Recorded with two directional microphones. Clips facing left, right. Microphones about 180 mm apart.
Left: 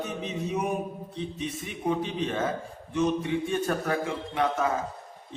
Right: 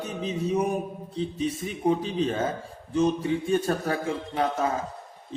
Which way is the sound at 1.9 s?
35° right (ahead or behind).